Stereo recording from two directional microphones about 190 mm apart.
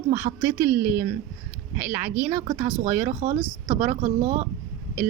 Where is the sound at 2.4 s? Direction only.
35° right (ahead or behind).